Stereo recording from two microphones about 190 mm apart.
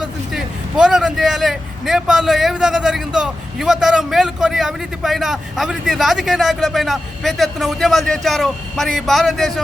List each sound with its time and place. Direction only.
0.0 s speech: 5° right (ahead or behind)